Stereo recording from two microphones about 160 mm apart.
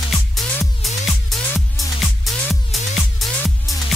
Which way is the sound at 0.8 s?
Centre (ahead or behind).